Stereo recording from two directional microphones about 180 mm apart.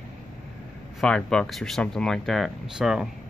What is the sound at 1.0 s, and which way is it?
Speech, 5° left (ahead or behind).